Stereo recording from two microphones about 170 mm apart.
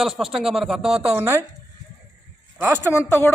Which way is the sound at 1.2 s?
20° right (ahead or behind).